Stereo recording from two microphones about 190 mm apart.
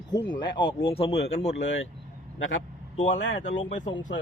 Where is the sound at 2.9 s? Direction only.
40° left (ahead or behind).